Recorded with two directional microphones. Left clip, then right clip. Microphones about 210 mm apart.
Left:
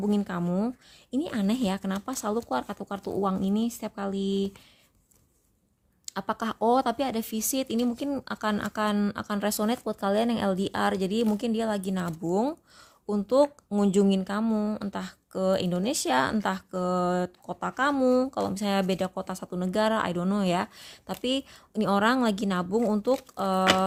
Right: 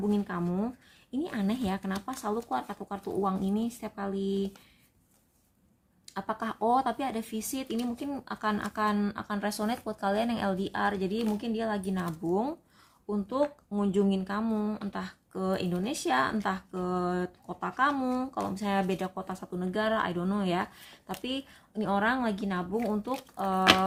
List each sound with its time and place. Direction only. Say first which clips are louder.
0.1 s speech: left 3 dB; 50° left (ahead or behind)
6.1 s speech: left 3 dB; 45° left (ahead or behind)